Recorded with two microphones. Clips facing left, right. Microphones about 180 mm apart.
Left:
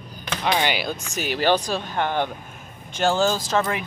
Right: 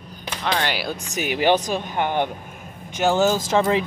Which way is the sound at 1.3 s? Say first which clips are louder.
Right 2 dB; 15° right (ahead or behind).